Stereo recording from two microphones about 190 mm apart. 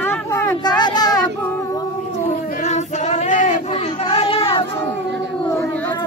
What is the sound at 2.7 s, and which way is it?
Female singing, 40° left (ahead or behind).